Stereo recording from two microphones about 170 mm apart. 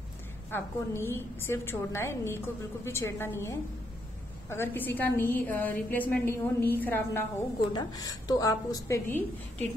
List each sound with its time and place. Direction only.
0.5 s a woman's voice: 15° left (ahead or behind)